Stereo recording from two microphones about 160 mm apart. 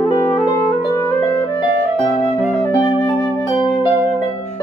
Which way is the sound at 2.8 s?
35° left (ahead or behind).